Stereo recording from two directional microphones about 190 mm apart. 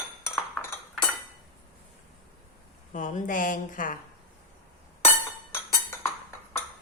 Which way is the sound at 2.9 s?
40° left (ahead or behind).